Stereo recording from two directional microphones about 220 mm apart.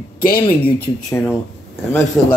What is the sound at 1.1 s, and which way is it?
Speech, 10° left (ahead or behind).